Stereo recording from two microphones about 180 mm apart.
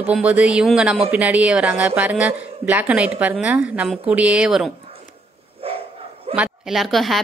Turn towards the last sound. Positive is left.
turn(degrees=0)  # may be behind; listen again after turning